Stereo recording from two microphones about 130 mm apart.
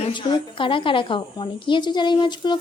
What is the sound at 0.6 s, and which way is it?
A woman's voice, 40° left (ahead or behind).